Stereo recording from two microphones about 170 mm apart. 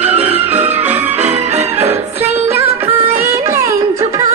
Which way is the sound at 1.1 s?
40° right (ahead or behind).